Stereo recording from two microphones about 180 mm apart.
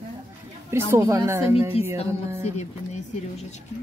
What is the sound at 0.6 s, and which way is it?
Speech, 15° right (ahead or behind).